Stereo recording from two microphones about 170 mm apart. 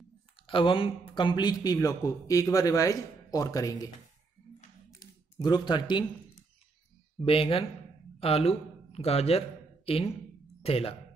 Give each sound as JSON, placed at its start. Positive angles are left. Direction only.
{"t": 0.5, "sound": "speech", "side_deg": 30}
{"t": 4.9, "sound": "a sound", "side_deg": 25}
{"t": 7.2, "sound": "speech", "side_deg": 30}